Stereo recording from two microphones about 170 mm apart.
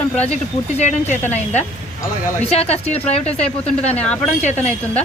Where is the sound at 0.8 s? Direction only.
45° left (ahead or behind).